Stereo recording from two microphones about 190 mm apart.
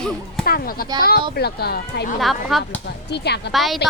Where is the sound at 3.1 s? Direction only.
60° left (ahead or behind).